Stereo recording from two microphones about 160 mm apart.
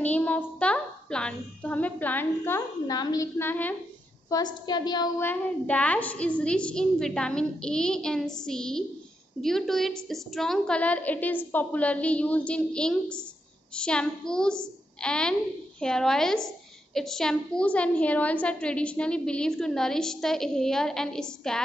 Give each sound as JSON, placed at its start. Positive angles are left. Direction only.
{"t": 0.0, "sound": "a woman's voice", "side_deg": 10}
{"t": 4.3, "sound": "a woman's voice", "side_deg": 25}
{"t": 5.2, "sound": "a child's voice", "side_deg": 10}